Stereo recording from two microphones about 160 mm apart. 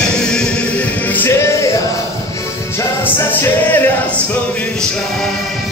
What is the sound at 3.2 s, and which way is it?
A capella, 15° left (ahead or behind).